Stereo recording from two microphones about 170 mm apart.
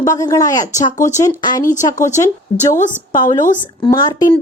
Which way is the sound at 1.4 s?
25° left (ahead or behind).